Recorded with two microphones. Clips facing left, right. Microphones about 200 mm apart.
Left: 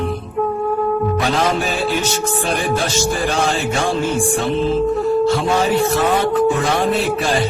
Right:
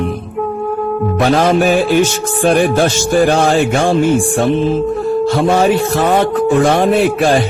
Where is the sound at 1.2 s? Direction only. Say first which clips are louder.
Right 7 dB; 50° right (ahead or behind).